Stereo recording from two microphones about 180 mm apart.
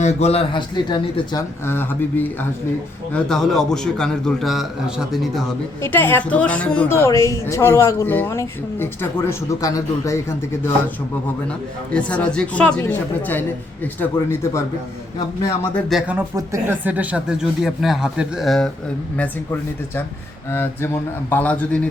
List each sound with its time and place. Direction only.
0.0 s speech: 35° left (ahead or behind)
1.6 s a woman's voice: 10° left (ahead or behind)
5.8 s a woman's voice: 10° left (ahead or behind)
11.9 s a woman's voice: 5° left (ahead or behind)
15.9 s speech: 5° right (ahead or behind)
20.5 s a woman's voice: 15° left (ahead or behind)